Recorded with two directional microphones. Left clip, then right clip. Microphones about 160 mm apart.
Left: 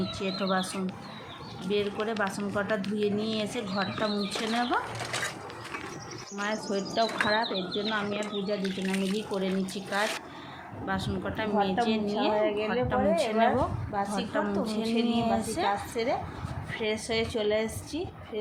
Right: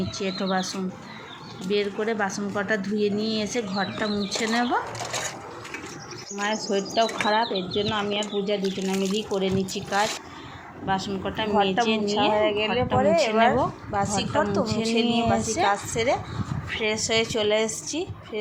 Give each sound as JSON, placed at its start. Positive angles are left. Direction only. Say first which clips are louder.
{"t": 0.2, "sound": "speech", "louder": "right 3 dB", "side_deg": 0}
{"t": 6.4, "sound": "a woman's voice", "louder": "right 5 dB", "side_deg": -15}